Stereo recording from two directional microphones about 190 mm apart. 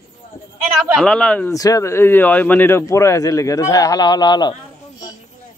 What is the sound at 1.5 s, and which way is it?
Speech, 20° left (ahead or behind).